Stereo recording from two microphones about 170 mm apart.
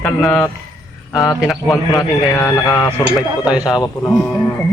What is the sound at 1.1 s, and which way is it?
A man's voice, 20° left (ahead or behind).